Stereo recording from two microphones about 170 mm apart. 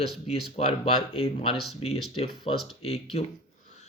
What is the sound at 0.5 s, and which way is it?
Speech, 35° left (ahead or behind).